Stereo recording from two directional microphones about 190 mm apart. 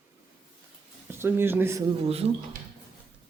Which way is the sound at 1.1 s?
10° right (ahead or behind).